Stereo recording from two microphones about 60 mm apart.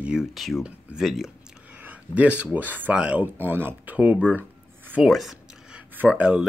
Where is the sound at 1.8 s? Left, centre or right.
Right.